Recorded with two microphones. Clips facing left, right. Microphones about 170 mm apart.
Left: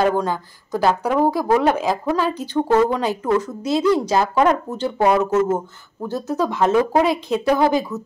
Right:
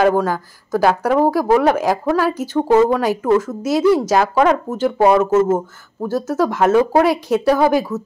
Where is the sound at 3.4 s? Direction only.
90° right.